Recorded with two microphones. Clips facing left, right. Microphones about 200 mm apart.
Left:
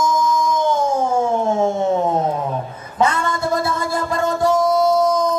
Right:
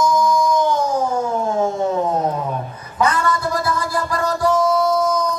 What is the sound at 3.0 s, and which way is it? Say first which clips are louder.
Music: even; 25° left (ahead or behind).